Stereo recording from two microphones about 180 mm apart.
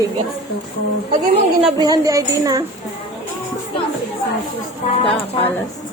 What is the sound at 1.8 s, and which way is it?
Speech, 20° right (ahead or behind).